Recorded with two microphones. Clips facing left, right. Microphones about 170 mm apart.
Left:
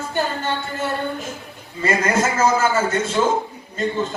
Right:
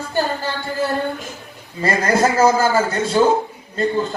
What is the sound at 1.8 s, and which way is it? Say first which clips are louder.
Speech: right 2 dB; 35° right (ahead or behind).